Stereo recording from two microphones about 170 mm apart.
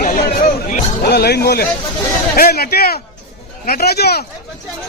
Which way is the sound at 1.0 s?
70° left (ahead or behind).